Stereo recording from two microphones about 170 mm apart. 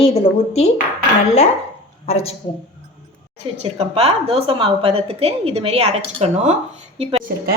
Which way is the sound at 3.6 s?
35° right (ahead or behind).